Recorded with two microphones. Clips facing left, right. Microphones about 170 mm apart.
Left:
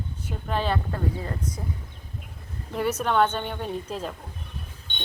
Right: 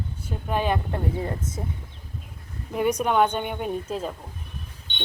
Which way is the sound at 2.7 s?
10° right (ahead or behind).